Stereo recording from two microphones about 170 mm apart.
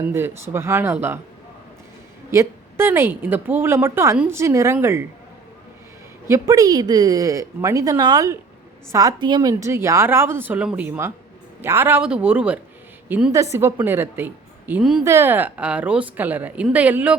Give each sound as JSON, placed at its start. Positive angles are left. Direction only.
{"t": 0.0, "sound": "speech", "side_deg": -15}
{"t": 2.3, "sound": "speech", "side_deg": -15}
{"t": 6.2, "sound": "a woman's voice", "side_deg": -20}
{"t": 15.0, "sound": "speech", "side_deg": -15}